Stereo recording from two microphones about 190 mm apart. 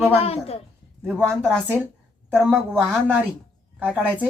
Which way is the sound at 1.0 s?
5° right (ahead or behind).